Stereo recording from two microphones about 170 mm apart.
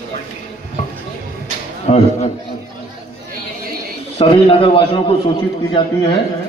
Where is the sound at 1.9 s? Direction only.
40° left (ahead or behind).